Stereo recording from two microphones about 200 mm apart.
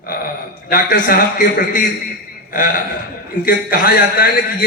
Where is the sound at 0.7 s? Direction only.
45° left (ahead or behind).